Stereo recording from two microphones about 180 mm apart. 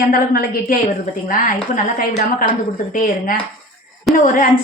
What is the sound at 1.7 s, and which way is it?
A woman's voice, 50° left (ahead or behind).